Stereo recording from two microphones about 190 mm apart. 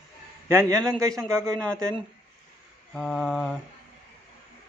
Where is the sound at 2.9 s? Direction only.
Centre (ahead or behind).